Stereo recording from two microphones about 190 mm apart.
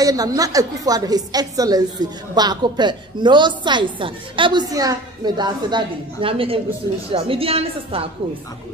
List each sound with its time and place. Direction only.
0.0 s a woman's voice: 20° right (ahead or behind)